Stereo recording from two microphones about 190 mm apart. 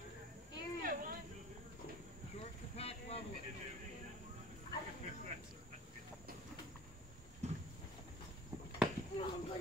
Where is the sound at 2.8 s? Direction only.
30° left (ahead or behind).